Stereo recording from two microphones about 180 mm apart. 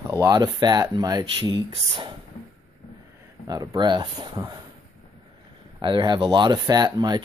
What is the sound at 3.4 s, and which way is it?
Speech, 20° right (ahead or behind).